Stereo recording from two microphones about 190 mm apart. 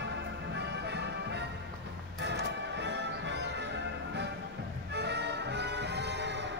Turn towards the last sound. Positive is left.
turn(degrees=-65)  # may be behind; listen again after turning